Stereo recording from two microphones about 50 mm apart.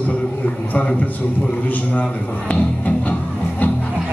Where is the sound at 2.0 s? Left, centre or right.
Left.